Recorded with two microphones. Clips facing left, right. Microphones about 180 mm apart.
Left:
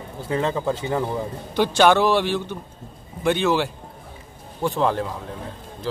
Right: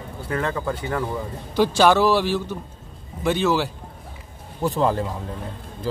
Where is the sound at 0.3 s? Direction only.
20° left (ahead or behind).